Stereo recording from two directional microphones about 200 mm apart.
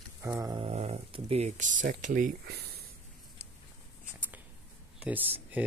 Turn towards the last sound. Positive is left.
turn(degrees=-10)  # may be behind; listen again after turning